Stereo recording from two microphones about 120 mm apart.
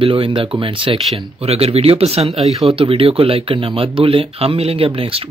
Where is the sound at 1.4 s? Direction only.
55° right (ahead or behind).